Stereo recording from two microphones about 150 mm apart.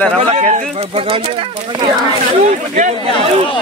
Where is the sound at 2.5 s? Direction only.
55° right (ahead or behind).